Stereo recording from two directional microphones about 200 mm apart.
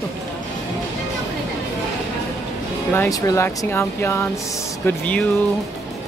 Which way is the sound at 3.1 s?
15° left (ahead or behind).